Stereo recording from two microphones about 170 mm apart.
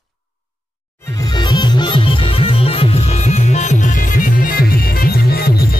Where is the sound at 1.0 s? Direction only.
20° left (ahead or behind).